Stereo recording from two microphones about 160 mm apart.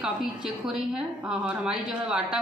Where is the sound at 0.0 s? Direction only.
5° right (ahead or behind).